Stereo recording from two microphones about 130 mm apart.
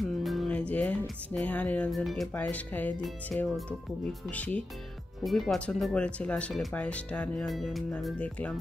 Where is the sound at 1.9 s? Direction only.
Centre (ahead or behind).